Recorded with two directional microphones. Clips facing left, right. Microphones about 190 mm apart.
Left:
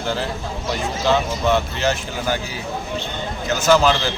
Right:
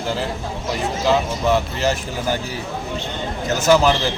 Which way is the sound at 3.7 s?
10° right (ahead or behind).